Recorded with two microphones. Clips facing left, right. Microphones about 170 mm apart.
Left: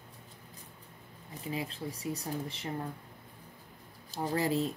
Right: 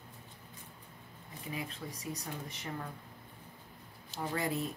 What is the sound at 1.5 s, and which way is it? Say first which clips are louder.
Speech: left 4 dB; 30° left (ahead or behind).